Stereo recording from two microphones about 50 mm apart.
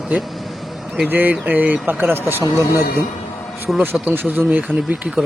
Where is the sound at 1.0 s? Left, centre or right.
Right.